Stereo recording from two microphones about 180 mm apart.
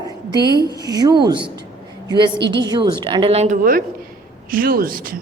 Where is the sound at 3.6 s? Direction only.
50° right (ahead or behind).